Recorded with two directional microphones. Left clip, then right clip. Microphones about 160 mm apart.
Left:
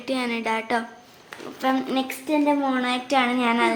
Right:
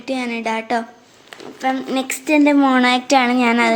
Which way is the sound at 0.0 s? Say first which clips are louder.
Right 3 dB; 15° right (ahead or behind).